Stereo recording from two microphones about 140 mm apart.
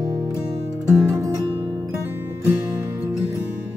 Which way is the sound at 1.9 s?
15° right (ahead or behind).